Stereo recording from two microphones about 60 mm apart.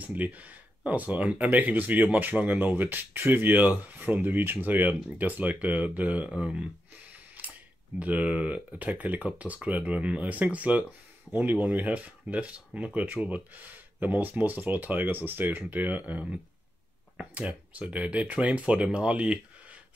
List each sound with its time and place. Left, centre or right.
0.0 s speech: right